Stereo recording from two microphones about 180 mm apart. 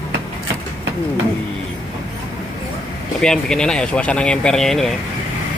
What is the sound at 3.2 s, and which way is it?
Speech, 5° left (ahead or behind).